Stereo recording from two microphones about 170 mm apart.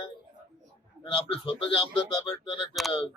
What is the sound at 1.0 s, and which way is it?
Speech, 30° left (ahead or behind).